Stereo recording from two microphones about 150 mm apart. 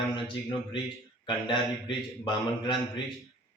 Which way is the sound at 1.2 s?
35° left (ahead or behind).